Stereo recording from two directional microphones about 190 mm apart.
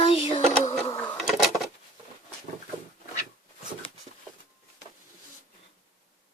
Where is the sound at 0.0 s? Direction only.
30° left (ahead or behind).